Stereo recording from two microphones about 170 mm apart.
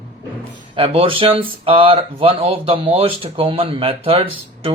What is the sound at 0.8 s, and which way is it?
Speech, 35° right (ahead or behind).